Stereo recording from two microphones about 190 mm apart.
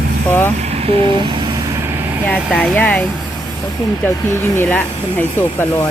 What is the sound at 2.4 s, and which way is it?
Speech, 5° left (ahead or behind).